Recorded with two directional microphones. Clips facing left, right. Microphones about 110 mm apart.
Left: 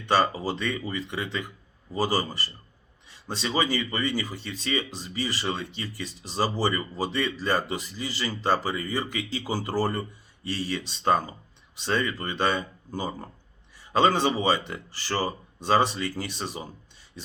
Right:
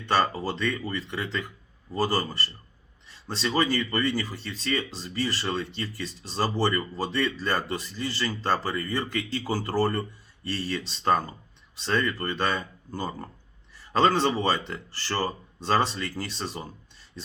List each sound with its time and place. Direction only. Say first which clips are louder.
0.0 s a man's voice: left 1 dB; 10° left (ahead or behind)